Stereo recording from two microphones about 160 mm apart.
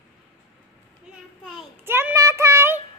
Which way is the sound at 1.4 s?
Centre (ahead or behind).